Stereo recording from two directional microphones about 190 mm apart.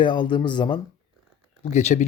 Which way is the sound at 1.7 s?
35° left (ahead or behind).